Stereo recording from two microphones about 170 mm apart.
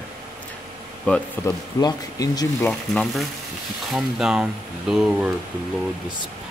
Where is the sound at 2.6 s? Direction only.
5° left (ahead or behind).